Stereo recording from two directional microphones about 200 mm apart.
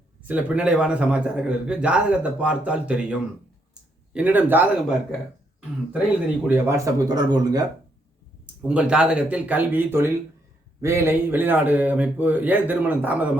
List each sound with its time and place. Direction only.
0.3 s a man's voice: 5° right (ahead or behind)
6.5 s speech: 15° right (ahead or behind)
8.6 s a man's voice: 5° right (ahead or behind)